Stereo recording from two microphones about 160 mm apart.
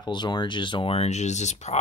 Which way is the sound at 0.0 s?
25° left (ahead or behind).